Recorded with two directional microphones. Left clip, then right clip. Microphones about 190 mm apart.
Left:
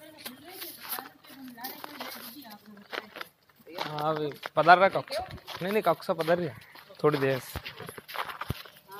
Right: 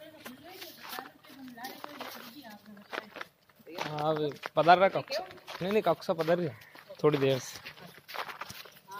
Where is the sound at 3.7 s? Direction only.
30° left (ahead or behind).